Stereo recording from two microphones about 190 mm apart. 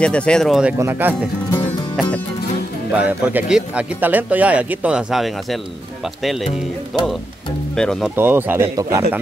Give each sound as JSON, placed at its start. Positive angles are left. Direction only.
{"t": 0.0, "sound": "speech", "side_deg": 5}
{"t": 2.0, "sound": "music", "side_deg": 5}
{"t": 2.9, "sound": "speech", "side_deg": -5}
{"t": 8.2, "sound": "speech", "side_deg": -10}